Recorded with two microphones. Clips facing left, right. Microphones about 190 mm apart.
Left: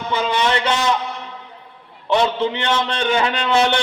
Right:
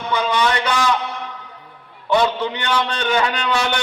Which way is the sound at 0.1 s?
25° left (ahead or behind).